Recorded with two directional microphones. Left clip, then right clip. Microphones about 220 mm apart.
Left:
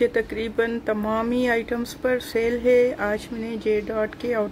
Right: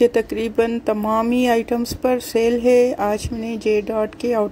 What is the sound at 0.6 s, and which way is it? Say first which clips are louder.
Speech: right 4 dB; 15° right (ahead or behind).